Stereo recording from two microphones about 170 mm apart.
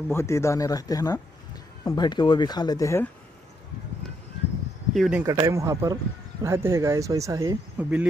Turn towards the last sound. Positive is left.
turn(degrees=-10)  # may be behind; listen again after turning